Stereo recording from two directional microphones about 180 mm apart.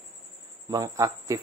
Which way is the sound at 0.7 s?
20° right (ahead or behind).